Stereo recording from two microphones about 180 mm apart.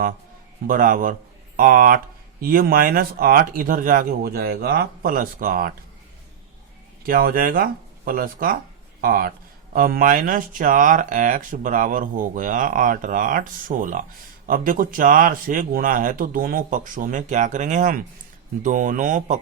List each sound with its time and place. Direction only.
0.7 s speech: 50° right (ahead or behind)
7.0 s speech: 55° right (ahead or behind)